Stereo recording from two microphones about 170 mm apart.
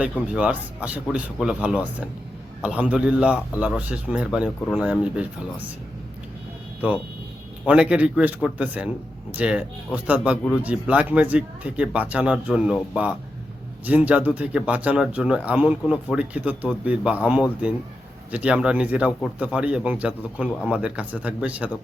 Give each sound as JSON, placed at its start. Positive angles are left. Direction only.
{"t": 0.0, "sound": "speech", "side_deg": -5}
{"t": 6.8, "sound": "a man's voice", "side_deg": -10}